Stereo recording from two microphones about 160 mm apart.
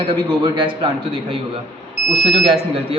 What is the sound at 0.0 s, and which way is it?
A man's voice, 30° right (ahead or behind).